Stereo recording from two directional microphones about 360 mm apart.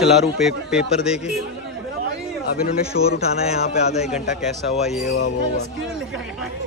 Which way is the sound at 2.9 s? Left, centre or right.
Left.